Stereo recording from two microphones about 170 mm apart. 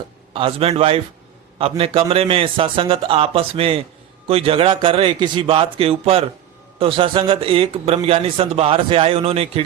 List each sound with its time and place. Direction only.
0.3 s a man's voice: 35° right (ahead or behind)